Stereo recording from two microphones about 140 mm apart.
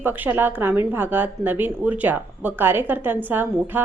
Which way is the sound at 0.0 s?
15° right (ahead or behind).